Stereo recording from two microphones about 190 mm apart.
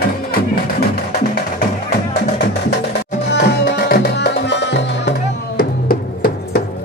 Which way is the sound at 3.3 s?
55° left (ahead or behind).